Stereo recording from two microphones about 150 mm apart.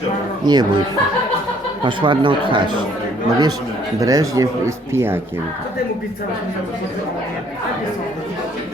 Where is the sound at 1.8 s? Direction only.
35° right (ahead or behind).